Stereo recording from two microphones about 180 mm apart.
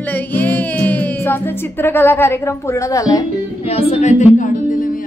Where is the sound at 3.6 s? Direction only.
35° left (ahead or behind).